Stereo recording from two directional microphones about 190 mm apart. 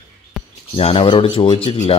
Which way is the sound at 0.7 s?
30° left (ahead or behind).